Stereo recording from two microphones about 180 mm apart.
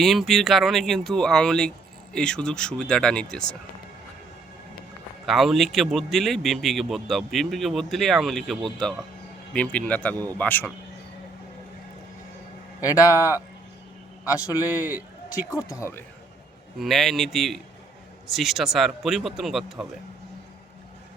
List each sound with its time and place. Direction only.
0.0 s a man's voice: centre (ahead or behind)
5.2 s a man's voice: centre (ahead or behind)
12.8 s a man's voice: 20° left (ahead or behind)
14.7 s a man's voice: 10° right (ahead or behind)
15.3 s speech: 20° left (ahead or behind)
16.7 s a man's voice: centre (ahead or behind)